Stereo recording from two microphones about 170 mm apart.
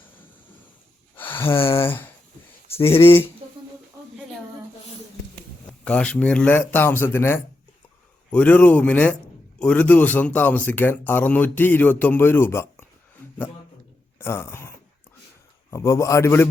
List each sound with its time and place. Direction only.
1.1 s a sound: 10° left (ahead or behind)
1.7 s speech: 10° left (ahead or behind)
5.8 s speech: 5° left (ahead or behind)
14.2 s speech: 15° left (ahead or behind)
15.7 s speech: 20° left (ahead or behind)